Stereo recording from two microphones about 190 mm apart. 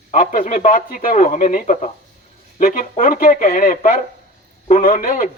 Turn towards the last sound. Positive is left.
turn(degrees=45)  # may be behind; listen again after turning